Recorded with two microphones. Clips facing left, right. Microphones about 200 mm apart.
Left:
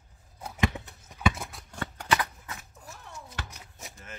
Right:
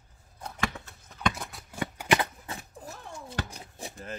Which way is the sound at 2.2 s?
30° right (ahead or behind).